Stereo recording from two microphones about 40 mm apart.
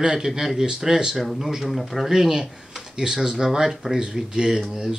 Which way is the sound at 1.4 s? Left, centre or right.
Centre.